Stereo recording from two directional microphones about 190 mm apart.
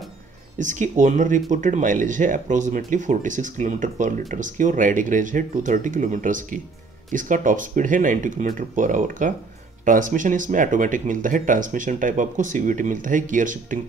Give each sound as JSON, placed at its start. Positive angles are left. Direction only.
{"t": 0.6, "sound": "speech", "side_deg": -40}